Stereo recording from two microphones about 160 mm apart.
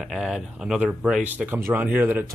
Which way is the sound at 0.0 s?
Centre (ahead or behind).